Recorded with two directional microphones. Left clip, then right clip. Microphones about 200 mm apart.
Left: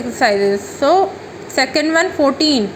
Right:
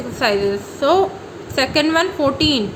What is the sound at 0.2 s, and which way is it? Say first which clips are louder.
A woman's voice: left 4 dB; 25° left (ahead or behind).